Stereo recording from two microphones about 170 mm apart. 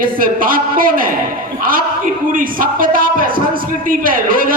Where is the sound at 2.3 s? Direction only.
55° right (ahead or behind).